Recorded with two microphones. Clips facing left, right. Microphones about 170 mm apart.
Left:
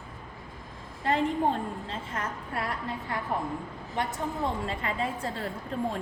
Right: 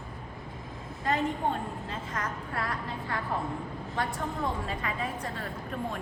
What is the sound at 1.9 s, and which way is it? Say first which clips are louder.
A woman's voice: even; 25° left (ahead or behind).